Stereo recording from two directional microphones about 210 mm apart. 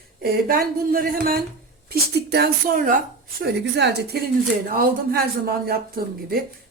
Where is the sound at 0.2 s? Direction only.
45° right (ahead or behind).